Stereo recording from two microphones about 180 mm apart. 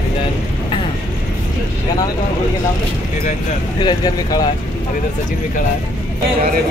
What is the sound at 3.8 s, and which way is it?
Speech, 25° left (ahead or behind).